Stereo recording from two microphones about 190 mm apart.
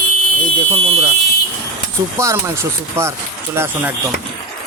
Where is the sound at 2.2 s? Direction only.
15° right (ahead or behind).